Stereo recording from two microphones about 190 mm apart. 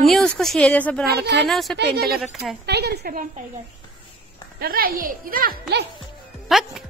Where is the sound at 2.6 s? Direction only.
60° right (ahead or behind).